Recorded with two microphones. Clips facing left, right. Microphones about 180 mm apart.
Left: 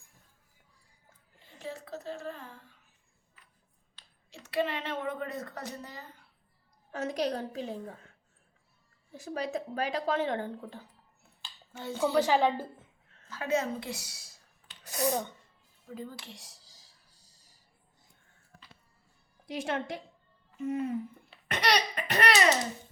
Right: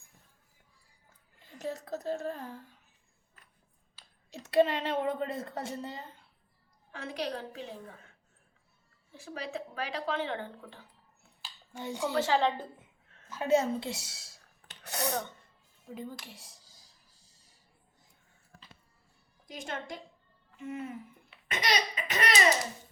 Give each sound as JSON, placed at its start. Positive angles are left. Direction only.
{"t": 1.5, "sound": "a woman's voice", "side_deg": -40}
{"t": 3.4, "sound": "a sound", "side_deg": -45}
{"t": 4.3, "sound": "a woman's voice", "side_deg": -40}
{"t": 6.9, "sound": "speech", "side_deg": 40}
{"t": 9.1, "sound": "speech", "side_deg": 40}
{"t": 11.8, "sound": "speech", "side_deg": -15}
{"t": 12.1, "sound": "a woman's voice", "side_deg": 15}
{"t": 13.3, "sound": "a woman's voice", "side_deg": -25}
{"t": 14.8, "sound": "sneeze", "side_deg": -70}
{"t": 16.0, "sound": "speech", "side_deg": -15}
{"t": 19.5, "sound": "a woman's voice", "side_deg": 65}
{"t": 20.6, "sound": "speech", "side_deg": 40}
{"t": 21.4, "sound": "a sound", "side_deg": 65}